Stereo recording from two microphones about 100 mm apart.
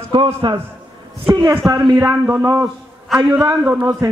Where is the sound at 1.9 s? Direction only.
20° right (ahead or behind).